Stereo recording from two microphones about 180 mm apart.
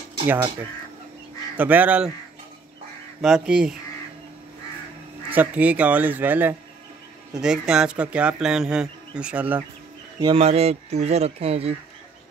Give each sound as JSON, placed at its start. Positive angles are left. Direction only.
{"t": 1.6, "sound": "a man's voice", "side_deg": -10}
{"t": 3.2, "sound": "speech", "side_deg": -5}
{"t": 5.3, "sound": "a man's voice", "side_deg": -10}
{"t": 10.2, "sound": "speech", "side_deg": -35}